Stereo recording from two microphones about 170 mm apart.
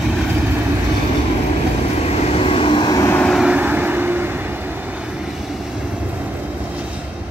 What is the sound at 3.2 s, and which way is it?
Vehicle, 5° right (ahead or behind).